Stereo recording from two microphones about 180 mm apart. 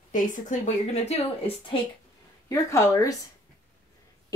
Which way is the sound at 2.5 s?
15° left (ahead or behind).